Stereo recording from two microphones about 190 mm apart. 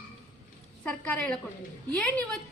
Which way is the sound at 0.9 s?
5° left (ahead or behind).